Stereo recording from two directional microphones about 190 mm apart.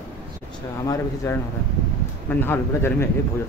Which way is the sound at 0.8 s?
15° left (ahead or behind).